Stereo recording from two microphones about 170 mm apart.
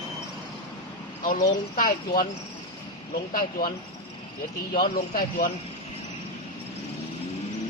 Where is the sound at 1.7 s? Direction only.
55° left (ahead or behind).